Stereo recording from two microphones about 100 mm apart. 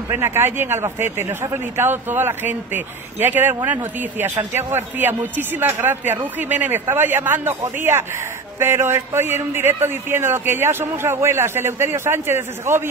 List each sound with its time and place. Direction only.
0.1 s a man's voice: 25° right (ahead or behind)